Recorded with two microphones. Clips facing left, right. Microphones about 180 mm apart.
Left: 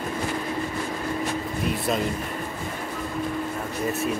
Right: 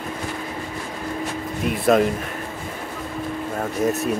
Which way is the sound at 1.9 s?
60° right (ahead or behind).